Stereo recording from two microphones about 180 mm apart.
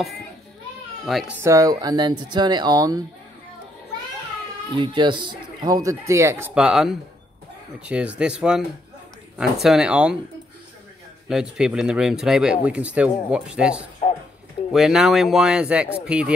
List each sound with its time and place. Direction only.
1.0 s speech: centre (ahead or behind)
1.4 s speech: 20° right (ahead or behind)
4.7 s speech: 25° right (ahead or behind); by 10.1 s 5° right (ahead or behind)
11.2 s speech: 5° right (ahead or behind)